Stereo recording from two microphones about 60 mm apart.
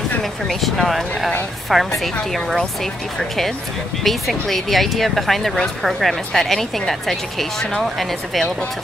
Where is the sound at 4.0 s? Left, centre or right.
Centre.